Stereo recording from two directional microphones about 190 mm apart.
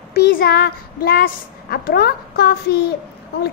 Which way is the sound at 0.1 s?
55° left (ahead or behind).